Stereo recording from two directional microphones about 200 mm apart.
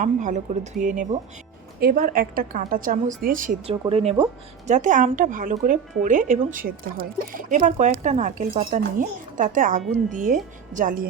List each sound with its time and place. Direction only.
0.0 s a woman's voice: 40° right (ahead or behind)
3.7 s speech: 30° right (ahead or behind)
4.7 s speech: 40° right (ahead or behind)